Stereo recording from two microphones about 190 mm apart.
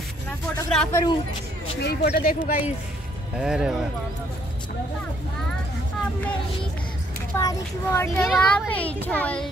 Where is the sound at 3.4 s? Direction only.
5° right (ahead or behind).